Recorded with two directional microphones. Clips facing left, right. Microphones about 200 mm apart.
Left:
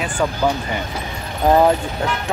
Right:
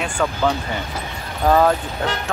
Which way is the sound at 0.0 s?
10° left (ahead or behind).